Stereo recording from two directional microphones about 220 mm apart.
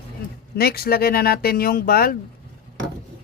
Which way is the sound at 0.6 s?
45° left (ahead or behind).